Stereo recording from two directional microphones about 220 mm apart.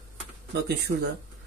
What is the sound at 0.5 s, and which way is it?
Speech, 50° right (ahead or behind).